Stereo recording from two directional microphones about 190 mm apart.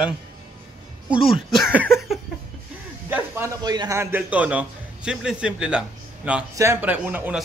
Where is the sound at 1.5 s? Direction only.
Centre (ahead or behind).